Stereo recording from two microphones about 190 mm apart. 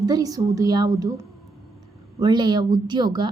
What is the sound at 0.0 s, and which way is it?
A woman's voice, 20° right (ahead or behind).